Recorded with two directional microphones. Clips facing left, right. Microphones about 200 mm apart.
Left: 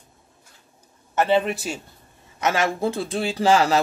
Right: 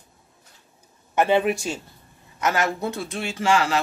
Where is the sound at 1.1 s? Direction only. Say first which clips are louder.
Even; 15° right (ahead or behind).